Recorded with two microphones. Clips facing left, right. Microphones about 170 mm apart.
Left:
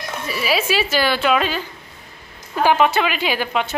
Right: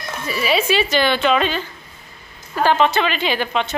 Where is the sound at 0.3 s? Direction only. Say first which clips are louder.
Right 2 dB; 5° left (ahead or behind).